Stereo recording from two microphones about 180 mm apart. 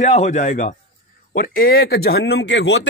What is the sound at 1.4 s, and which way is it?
Speech, 55° left (ahead or behind).